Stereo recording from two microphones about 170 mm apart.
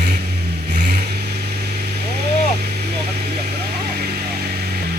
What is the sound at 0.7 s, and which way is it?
Vehicle, 75° right (ahead or behind).